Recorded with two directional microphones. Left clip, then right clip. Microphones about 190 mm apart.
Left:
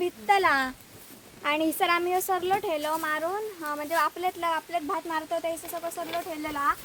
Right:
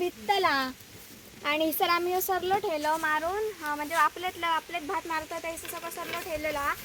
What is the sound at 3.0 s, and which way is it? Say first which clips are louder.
Speech: right 1 dB; 75° left (ahead or behind).